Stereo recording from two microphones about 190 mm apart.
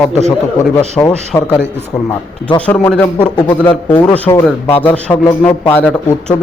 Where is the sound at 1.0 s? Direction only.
10° left (ahead or behind).